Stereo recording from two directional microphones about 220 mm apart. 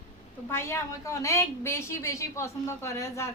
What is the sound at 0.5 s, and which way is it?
A woman's voice, 10° left (ahead or behind).